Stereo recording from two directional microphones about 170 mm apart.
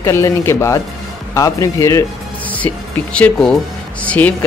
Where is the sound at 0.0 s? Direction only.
15° left (ahead or behind).